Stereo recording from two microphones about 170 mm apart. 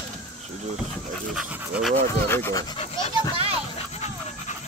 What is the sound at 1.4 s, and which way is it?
Speech, centre (ahead or behind).